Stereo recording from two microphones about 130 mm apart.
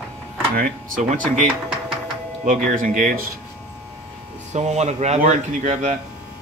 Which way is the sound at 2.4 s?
90° right.